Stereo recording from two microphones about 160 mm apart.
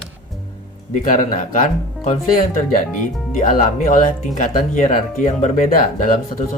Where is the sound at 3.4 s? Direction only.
55° left (ahead or behind).